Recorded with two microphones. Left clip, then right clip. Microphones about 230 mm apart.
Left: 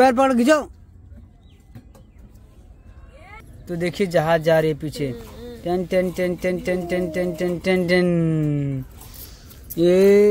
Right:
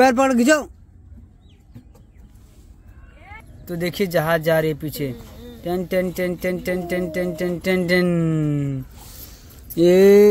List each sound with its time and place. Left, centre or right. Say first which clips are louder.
0.0 s speech: even; centre
3.6 s speech: even; centre
5.1 s a sound: left 4 dB; centre
5.6 s speech: left 1 dB; centre